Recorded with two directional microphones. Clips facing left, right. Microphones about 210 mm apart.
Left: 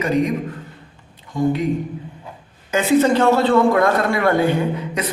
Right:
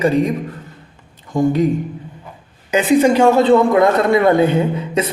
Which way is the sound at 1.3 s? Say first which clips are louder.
Right 4 dB; 40° right (ahead or behind).